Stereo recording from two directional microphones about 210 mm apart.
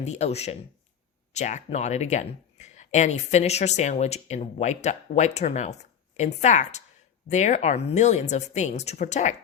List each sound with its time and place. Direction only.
0.0 s speech: 30° left (ahead or behind)